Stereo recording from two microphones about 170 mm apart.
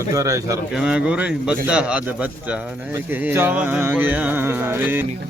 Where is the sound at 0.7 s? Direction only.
5° right (ahead or behind).